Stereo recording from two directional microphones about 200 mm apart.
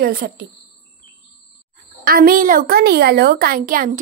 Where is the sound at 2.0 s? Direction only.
45° right (ahead or behind).